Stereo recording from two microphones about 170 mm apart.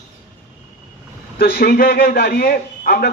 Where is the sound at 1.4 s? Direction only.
65° left (ahead or behind).